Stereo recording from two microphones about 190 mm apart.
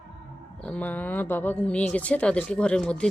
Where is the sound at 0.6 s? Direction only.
5° left (ahead or behind).